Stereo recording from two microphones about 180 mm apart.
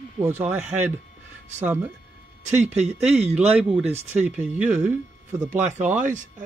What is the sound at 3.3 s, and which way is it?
Speech, 10° right (ahead or behind).